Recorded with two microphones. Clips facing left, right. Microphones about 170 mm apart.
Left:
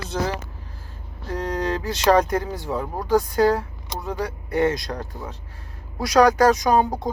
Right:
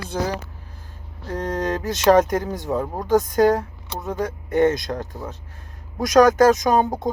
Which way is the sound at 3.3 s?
45° right (ahead or behind).